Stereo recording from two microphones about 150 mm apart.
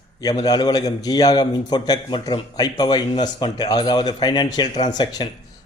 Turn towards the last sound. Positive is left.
turn(degrees=25)  # may be behind; listen again after turning